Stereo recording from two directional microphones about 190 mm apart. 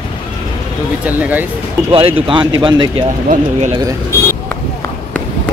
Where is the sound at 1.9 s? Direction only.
30° right (ahead or behind).